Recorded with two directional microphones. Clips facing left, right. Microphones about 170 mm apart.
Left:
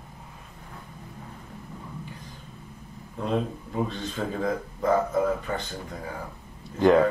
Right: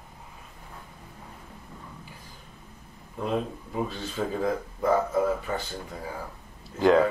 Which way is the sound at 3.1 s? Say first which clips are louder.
Left 1 dB; 5° right (ahead or behind).